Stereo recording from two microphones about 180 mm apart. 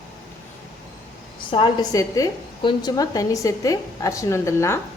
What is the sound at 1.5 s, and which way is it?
A woman's voice, 25° left (ahead or behind).